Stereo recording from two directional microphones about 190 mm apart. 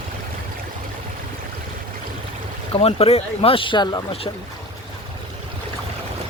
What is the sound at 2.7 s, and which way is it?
Speech, 30° left (ahead or behind).